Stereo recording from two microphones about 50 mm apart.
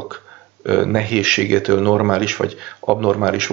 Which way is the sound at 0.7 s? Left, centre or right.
Centre.